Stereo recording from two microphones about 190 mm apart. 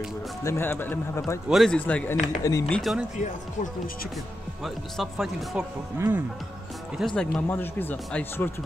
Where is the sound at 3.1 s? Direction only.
40° left (ahead or behind).